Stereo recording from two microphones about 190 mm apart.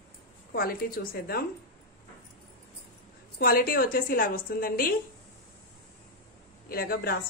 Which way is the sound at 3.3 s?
50° left (ahead or behind).